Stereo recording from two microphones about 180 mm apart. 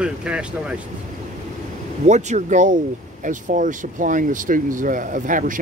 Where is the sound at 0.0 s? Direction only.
5° right (ahead or behind).